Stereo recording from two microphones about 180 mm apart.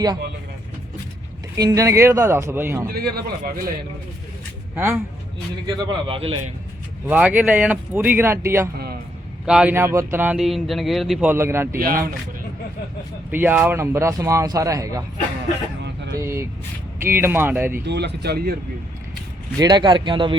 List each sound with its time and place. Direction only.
1.5 s speech: 20° right (ahead or behind)
2.8 s a man's voice: 60° right (ahead or behind)
4.7 s a man's voice: 15° right (ahead or behind)
5.6 s a man's voice: 30° right (ahead or behind)
7.1 s speech: 10° right (ahead or behind)
11.3 s speech: 15° right (ahead or behind)
13.3 s speech: 10° right (ahead or behind)
16.1 s speech: 15° right (ahead or behind)
17.8 s a man's voice: 70° right (ahead or behind)
19.5 s a man's voice: 25° right (ahead or behind)